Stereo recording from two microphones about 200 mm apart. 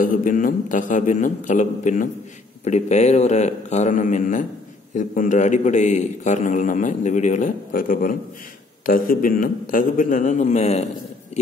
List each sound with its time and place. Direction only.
0.0 s a man's voice: 40° left (ahead or behind)